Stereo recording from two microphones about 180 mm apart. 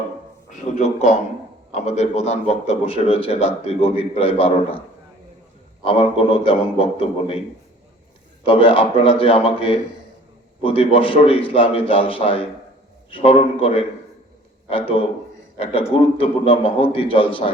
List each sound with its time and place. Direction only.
0.5 s a man's voice: 40° left (ahead or behind)
5.8 s a man's voice: 30° left (ahead or behind)
8.4 s a man's voice: 30° left (ahead or behind)
15.5 s a man's voice: 30° left (ahead or behind)